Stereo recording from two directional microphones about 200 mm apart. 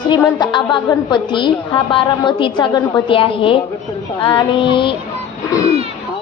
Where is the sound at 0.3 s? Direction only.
20° left (ahead or behind).